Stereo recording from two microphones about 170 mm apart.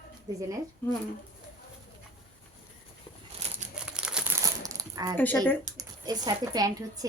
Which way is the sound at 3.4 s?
40° right (ahead or behind).